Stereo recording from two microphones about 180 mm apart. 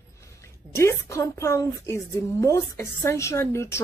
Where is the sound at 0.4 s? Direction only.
15° left (ahead or behind).